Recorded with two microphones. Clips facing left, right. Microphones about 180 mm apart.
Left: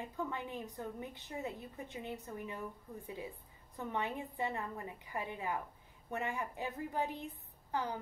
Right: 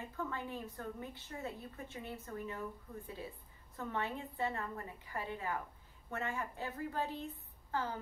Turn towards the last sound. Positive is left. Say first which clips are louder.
# left 1 dB
turn(degrees=15)  # may be behind; listen again after turning